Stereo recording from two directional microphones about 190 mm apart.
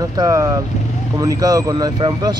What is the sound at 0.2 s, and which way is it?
Speech, 15° right (ahead or behind).